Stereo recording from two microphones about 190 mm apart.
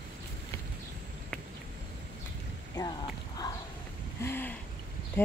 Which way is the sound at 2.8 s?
20° left (ahead or behind).